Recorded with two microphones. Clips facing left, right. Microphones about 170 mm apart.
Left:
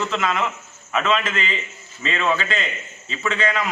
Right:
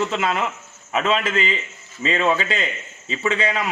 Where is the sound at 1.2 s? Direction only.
Centre (ahead or behind).